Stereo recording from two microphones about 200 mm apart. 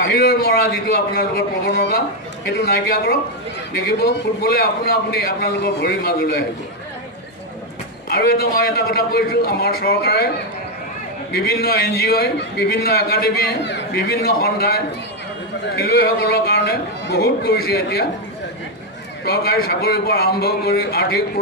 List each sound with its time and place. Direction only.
0.0 s a man's voice: 50° left (ahead or behind)
8.1 s a man's voice: 50° left (ahead or behind)
11.3 s a man's voice: 50° left (ahead or behind)
19.2 s a man's voice: 50° left (ahead or behind)